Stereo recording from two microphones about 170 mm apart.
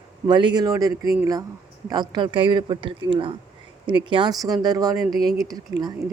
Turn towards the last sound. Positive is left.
turn(degrees=-20)  # may be behind; listen again after turning